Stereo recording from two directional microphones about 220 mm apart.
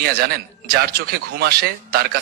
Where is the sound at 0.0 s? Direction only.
45° right (ahead or behind).